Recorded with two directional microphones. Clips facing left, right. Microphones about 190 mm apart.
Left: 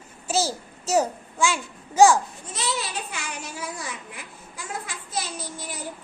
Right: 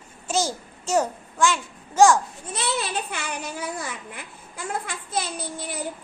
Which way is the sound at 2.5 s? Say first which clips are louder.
Right 3 dB; 60° right (ahead or behind).